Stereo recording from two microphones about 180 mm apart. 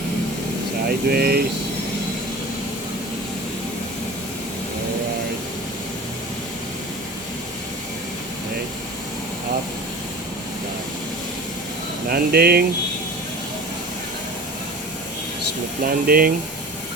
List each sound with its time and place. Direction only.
0.9 s speech: 60° right (ahead or behind)
12.0 s speech: 60° right (ahead or behind)
15.8 s speech: 55° right (ahead or behind)